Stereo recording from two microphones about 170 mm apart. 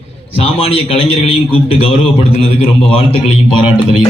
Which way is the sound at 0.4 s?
35° left (ahead or behind).